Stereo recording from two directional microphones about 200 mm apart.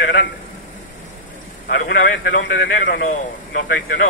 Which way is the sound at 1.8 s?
65° left (ahead or behind).